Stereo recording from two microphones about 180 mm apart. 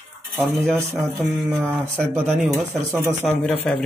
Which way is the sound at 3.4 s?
5° left (ahead or behind).